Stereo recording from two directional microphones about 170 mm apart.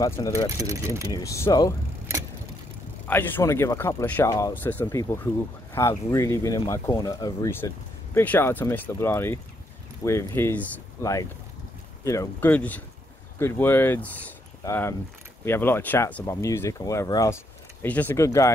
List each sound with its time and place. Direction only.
0.0 s speech: 20° left (ahead or behind)
0.6 s speech: 20° right (ahead or behind)
1.1 s speech: 20° left (ahead or behind)
3.1 s speech: 10° left (ahead or behind)